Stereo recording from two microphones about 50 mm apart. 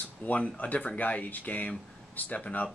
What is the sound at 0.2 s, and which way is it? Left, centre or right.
Speech, left.